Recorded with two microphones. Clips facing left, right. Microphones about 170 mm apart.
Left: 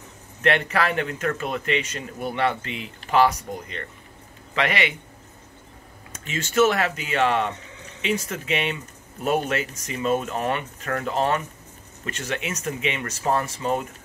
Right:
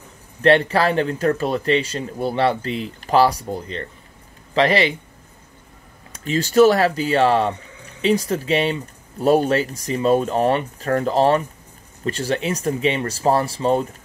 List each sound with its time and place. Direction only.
0.4 s speech: 30° right (ahead or behind)
6.2 s speech: 35° right (ahead or behind)